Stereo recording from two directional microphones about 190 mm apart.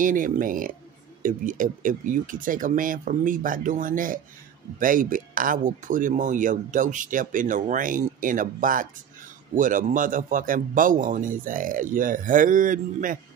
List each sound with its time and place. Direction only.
0.0 s speech: 45° right (ahead or behind)